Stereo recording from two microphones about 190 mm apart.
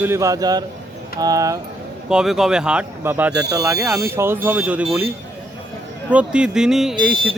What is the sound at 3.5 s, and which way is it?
Speech, 20° right (ahead or behind).